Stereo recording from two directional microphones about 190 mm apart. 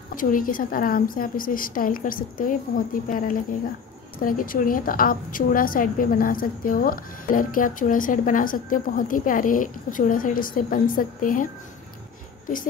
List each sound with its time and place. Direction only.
0.1 s a woman's voice: 45° left (ahead or behind)